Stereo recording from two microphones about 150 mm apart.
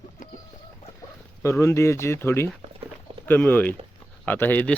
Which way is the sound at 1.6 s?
20° left (ahead or behind).